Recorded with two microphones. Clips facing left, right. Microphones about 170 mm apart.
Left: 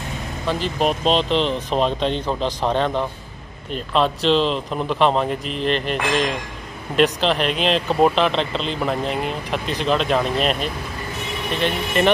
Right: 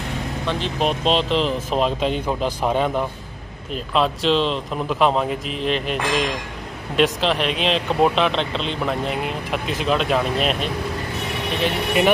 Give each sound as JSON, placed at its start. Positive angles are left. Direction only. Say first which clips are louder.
{"t": 0.5, "sound": "speech", "louder": "left 2 dB", "side_deg": 0}
{"t": 12.0, "sound": "speech", "louder": "even", "side_deg": -10}